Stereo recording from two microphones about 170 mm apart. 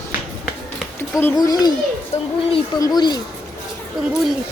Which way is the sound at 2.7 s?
20° left (ahead or behind).